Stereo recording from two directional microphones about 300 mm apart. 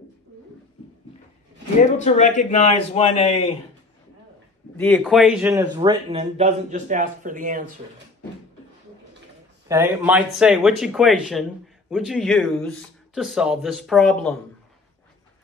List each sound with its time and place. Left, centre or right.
2.0 s a man's voice: left
4.7 s speech: centre; by 7.6 s right
9.7 s speech: centre